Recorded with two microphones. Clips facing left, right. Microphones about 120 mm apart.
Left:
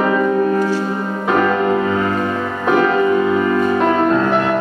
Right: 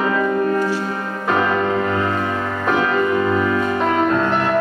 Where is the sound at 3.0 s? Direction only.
15° left (ahead or behind).